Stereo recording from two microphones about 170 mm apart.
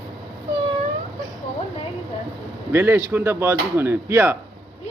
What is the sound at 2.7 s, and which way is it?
Speech, 15° right (ahead or behind).